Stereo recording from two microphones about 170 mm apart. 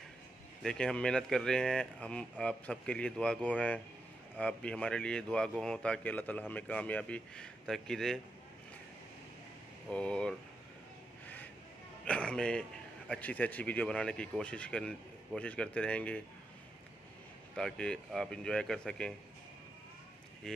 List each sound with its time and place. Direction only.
0.6 s speech: 5° left (ahead or behind)
9.8 s speech: 5° left (ahead or behind)
12.0 s speech: 5° left (ahead or behind)
17.6 s speech: 5° left (ahead or behind)
20.4 s speech: 5° left (ahead or behind)